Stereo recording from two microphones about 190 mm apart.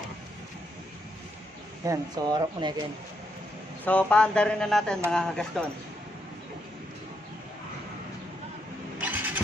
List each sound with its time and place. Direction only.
1.9 s speech: 20° right (ahead or behind)
3.8 s speech: 5° left (ahead or behind)
9.0 s vehicle: 10° right (ahead or behind)